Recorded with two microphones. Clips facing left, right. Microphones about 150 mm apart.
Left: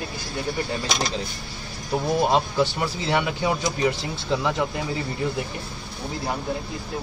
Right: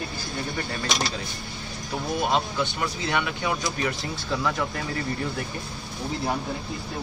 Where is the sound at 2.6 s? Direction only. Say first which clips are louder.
Left 3 dB; 30° left (ahead or behind).